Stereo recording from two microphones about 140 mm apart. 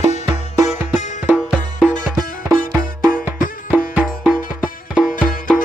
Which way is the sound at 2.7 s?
25° right (ahead or behind).